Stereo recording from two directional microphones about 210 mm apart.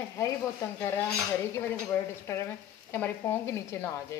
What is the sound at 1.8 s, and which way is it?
Sizzle, 10° left (ahead or behind).